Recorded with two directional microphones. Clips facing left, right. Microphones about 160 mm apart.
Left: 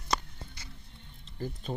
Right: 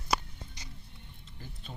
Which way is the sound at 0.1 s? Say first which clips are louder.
Right 1 dB; 15° right (ahead or behind).